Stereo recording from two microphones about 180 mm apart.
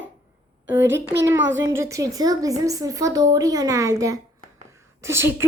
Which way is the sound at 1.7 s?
15° right (ahead or behind).